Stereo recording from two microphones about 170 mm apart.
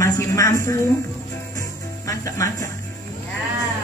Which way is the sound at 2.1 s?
20° left (ahead or behind).